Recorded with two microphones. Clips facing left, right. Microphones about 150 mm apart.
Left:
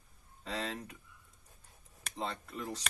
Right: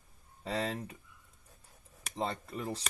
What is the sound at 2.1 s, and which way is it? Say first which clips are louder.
Speech: right 4 dB; 35° right (ahead or behind).